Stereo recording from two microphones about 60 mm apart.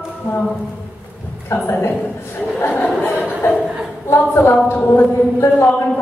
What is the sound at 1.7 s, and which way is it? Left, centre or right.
Speech, left.